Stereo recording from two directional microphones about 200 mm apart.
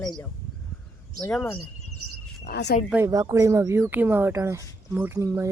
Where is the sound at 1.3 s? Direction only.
5° left (ahead or behind).